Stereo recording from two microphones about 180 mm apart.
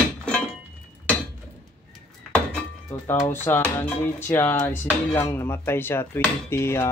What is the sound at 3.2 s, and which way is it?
Speech, 10° left (ahead or behind).